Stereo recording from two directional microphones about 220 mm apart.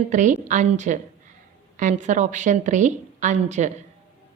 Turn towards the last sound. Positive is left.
turn(degrees=-35)  # may be behind; listen again after turning